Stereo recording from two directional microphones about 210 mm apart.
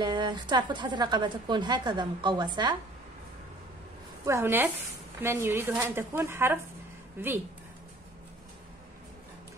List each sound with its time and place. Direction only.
0.0 s a woman's voice: 20° right (ahead or behind)
4.3 s speech: 10° right (ahead or behind)